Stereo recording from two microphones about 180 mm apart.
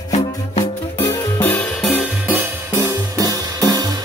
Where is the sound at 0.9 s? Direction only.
10° left (ahead or behind).